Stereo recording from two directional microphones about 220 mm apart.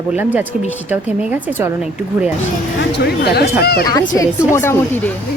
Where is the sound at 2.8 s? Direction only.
50° left (ahead or behind).